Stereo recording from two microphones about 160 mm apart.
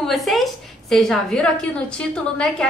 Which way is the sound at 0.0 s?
Centre (ahead or behind).